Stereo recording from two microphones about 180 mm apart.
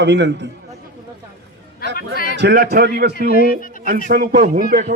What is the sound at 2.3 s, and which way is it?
Speech, 65° right (ahead or behind).